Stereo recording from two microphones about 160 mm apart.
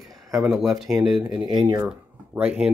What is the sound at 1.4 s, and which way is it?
Speech, 30° right (ahead or behind).